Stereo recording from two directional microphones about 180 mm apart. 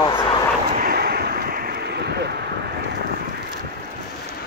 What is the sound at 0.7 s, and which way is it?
Vehicle, 55° right (ahead or behind).